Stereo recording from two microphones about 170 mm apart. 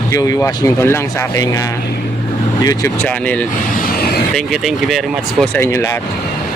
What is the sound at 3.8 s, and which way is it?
Vehicle, 65° left (ahead or behind).